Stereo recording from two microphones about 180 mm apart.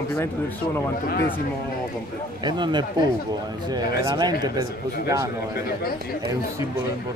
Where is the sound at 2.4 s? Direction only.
25° right (ahead or behind).